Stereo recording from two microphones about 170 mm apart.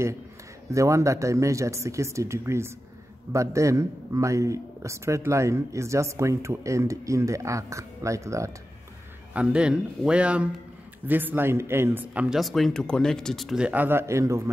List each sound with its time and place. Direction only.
0.7 s a man's voice: 20° right (ahead or behind)
9.3 s a man's voice: 5° right (ahead or behind)